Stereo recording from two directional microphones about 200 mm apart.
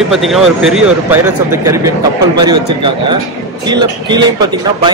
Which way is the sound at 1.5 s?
15° right (ahead or behind).